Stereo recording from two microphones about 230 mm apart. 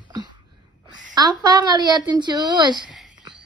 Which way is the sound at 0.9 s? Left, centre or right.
Centre.